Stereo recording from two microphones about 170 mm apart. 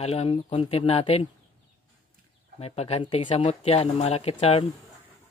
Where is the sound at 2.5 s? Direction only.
35° left (ahead or behind).